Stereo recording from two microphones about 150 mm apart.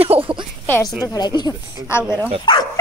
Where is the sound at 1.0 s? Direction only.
25° left (ahead or behind).